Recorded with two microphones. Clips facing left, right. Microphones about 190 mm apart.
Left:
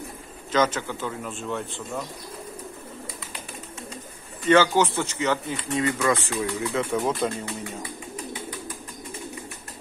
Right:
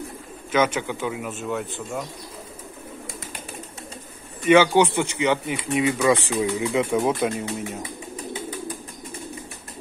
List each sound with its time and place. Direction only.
0.5 s speech: 10° right (ahead or behind)
4.5 s speech: 15° right (ahead or behind)